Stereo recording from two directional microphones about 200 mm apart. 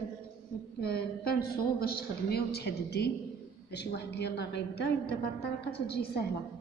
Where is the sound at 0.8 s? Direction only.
50° left (ahead or behind).